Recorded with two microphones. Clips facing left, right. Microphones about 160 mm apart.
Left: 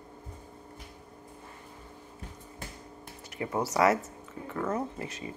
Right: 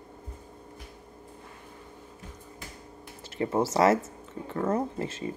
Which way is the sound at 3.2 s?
30° right (ahead or behind).